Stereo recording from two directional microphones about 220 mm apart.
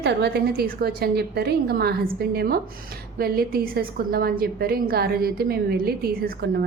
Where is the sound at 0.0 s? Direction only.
50° right (ahead or behind).